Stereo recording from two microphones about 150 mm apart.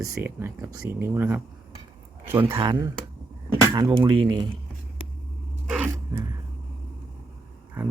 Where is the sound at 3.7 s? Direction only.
30° right (ahead or behind).